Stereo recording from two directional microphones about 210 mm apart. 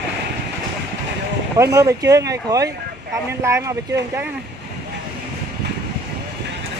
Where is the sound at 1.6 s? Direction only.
15° right (ahead or behind).